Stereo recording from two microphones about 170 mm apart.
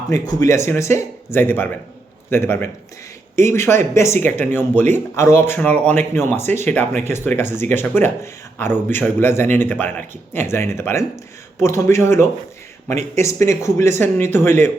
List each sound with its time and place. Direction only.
0.1 s speech: 20° left (ahead or behind)